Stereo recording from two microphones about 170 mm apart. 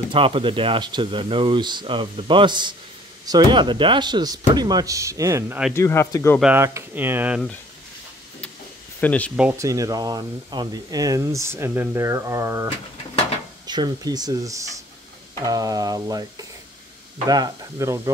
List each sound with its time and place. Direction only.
0.1 s speech: 30° right (ahead or behind)
5.8 s speech: 15° left (ahead or behind)
6.4 s speech: 15° right (ahead or behind)
9.0 s speech: 10° left (ahead or behind)
9.4 s speech: 15° right (ahead or behind)
13.7 s speech: 25° right (ahead or behind)